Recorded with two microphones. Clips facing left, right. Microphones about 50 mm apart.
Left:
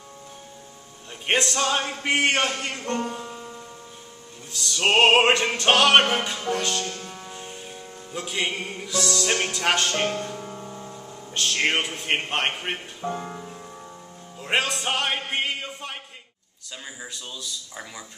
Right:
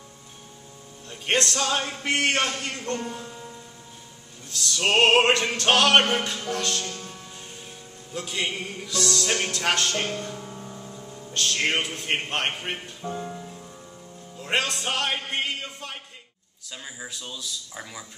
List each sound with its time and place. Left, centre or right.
1.2 s opera: centre
4.5 s opera: centre
6.9 s music: centre
11.3 s opera: centre
13.0 s music: left
14.3 s music: centre
17.0 s speech: centre